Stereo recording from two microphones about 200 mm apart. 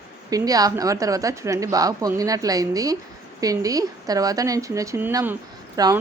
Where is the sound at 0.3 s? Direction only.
20° right (ahead or behind).